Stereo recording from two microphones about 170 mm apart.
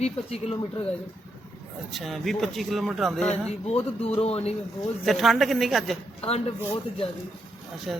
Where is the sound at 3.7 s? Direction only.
35° left (ahead or behind).